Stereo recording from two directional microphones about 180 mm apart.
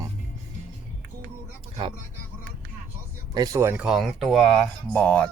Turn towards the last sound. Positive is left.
turn(degrees=5)  # may be behind; listen again after turning